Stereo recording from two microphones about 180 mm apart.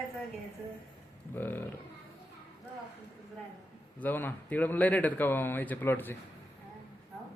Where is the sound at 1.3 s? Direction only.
10° left (ahead or behind).